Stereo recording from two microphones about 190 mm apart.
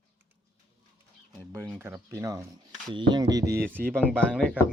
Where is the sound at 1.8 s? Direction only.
10° right (ahead or behind).